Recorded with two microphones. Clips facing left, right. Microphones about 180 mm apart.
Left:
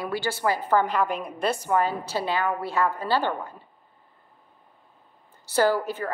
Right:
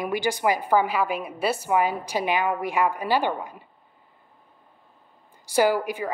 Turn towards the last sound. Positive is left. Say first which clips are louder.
# right 1 dB
turn(degrees=-10)  # may be behind; listen again after turning